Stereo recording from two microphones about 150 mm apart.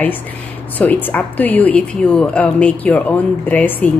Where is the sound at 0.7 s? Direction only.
10° left (ahead or behind).